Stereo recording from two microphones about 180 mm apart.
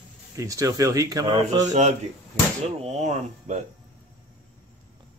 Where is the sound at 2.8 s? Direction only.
40° right (ahead or behind).